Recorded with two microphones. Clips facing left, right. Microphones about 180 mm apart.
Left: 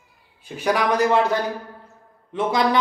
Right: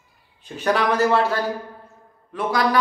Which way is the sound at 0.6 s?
10° left (ahead or behind).